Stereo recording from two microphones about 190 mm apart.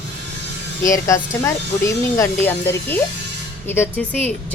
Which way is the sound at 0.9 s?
15° left (ahead or behind).